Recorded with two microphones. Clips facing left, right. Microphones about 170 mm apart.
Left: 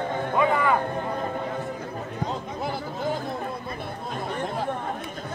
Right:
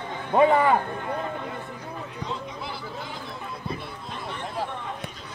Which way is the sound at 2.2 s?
45° left (ahead or behind).